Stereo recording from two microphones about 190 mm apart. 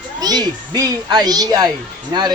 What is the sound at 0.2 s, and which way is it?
A child's voice, 20° right (ahead or behind).